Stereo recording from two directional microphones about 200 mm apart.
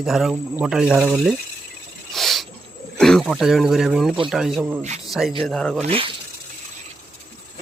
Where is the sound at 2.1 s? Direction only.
Centre (ahead or behind).